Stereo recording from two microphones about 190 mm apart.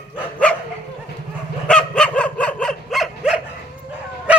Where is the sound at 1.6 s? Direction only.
5° left (ahead or behind).